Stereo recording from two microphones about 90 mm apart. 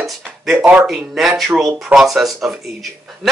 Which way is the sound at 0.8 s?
5° right (ahead or behind).